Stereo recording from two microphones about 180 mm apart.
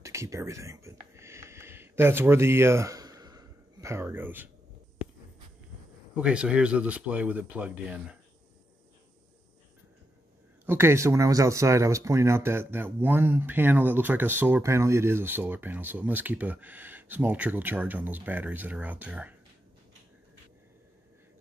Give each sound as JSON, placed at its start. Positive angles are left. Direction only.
{"t": 0.0, "sound": "a sound", "side_deg": -15}
{"t": 6.1, "sound": "speech", "side_deg": -5}
{"t": 10.6, "sound": "speech", "side_deg": -15}